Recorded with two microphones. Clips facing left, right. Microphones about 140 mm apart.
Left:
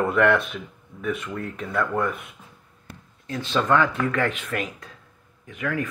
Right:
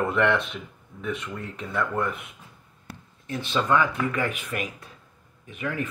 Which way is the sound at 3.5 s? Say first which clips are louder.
Left 2 dB; 10° right (ahead or behind).